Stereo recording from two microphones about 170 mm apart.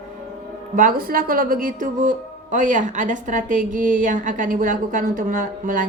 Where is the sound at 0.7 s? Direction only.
55° right (ahead or behind).